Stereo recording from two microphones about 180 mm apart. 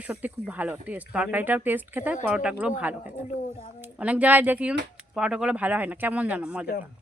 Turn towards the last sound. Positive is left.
turn(degrees=-5)  # may be behind; listen again after turning